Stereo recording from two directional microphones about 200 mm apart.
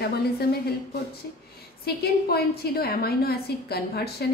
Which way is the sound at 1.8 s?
50° left (ahead or behind).